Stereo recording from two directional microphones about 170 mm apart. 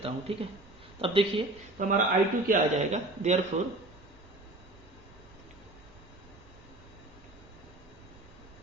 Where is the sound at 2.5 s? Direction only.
45° right (ahead or behind).